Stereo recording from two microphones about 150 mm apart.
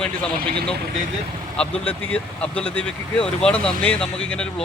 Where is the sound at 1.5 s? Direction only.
5° left (ahead or behind).